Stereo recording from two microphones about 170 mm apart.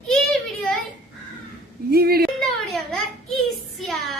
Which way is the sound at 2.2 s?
Centre (ahead or behind).